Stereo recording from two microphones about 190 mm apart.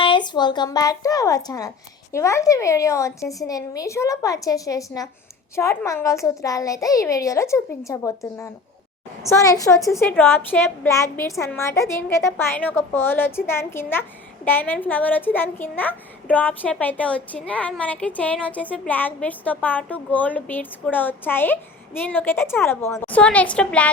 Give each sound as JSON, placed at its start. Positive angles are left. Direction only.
{"t": 0.0, "sound": "a child's voice", "side_deg": 25}